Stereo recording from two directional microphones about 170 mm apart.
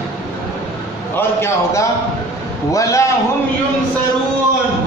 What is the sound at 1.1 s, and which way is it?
A man's voice, 15° left (ahead or behind).